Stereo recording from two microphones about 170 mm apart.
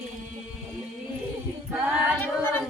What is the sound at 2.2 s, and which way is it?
Singing, 10° left (ahead or behind).